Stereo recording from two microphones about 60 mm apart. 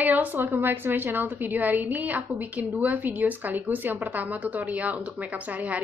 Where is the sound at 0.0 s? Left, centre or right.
Right.